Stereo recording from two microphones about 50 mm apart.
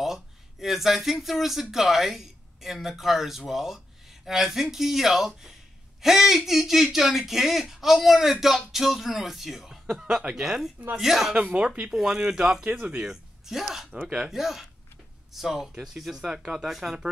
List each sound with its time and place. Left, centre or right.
0.0 s speech: centre
11.4 s speech: centre
11.9 s speech: centre